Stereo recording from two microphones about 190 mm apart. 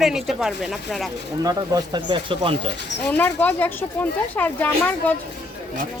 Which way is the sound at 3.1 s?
10° left (ahead or behind).